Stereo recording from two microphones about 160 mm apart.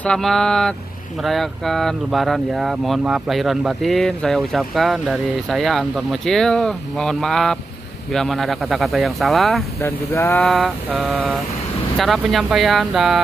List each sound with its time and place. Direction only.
0.0 s speech: 5° left (ahead or behind)
10.1 s a sound: 15° left (ahead or behind)
10.4 s speech: centre (ahead or behind)
12.0 s speech: centre (ahead or behind)